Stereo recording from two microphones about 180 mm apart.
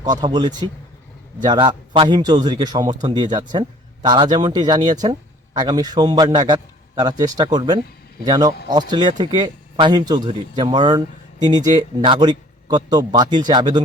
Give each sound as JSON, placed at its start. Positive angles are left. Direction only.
{"t": 0.0, "sound": "speech", "side_deg": -25}